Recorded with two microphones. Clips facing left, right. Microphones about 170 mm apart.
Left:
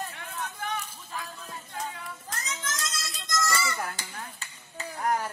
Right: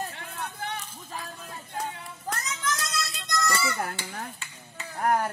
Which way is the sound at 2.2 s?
60° right (ahead or behind).